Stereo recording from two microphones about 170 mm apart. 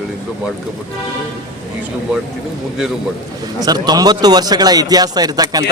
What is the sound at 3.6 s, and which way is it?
A man's voice, 25° right (ahead or behind).